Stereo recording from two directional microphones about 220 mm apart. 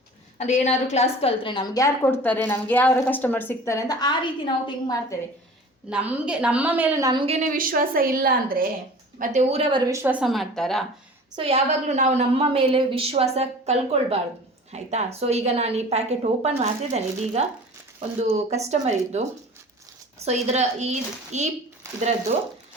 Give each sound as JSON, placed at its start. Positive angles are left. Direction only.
{"t": 0.3, "sound": "a woman's voice", "side_deg": 30}
{"t": 5.9, "sound": "a woman's voice", "side_deg": -5}
{"t": 11.3, "sound": "a woman's voice", "side_deg": -25}
{"t": 20.2, "sound": "speech", "side_deg": -30}